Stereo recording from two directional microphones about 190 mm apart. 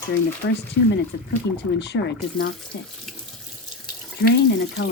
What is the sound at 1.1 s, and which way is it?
Speech, 65° left (ahead or behind).